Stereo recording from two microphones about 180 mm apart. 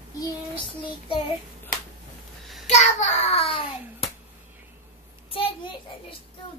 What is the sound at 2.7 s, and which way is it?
Hands, 40° left (ahead or behind).